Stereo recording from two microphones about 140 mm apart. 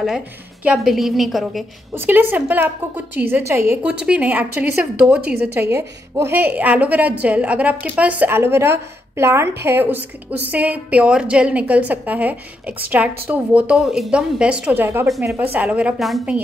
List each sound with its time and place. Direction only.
0.7 s a woman's voice: centre (ahead or behind)
2.0 s a woman's voice: 15° right (ahead or behind)